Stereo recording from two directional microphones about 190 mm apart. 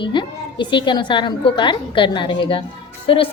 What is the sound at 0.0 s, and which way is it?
A woman's voice, 25° left (ahead or behind).